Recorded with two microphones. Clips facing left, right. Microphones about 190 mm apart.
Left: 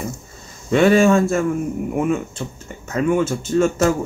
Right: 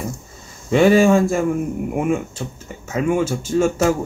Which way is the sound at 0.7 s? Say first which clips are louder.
Right 1 dB; 10° right (ahead or behind).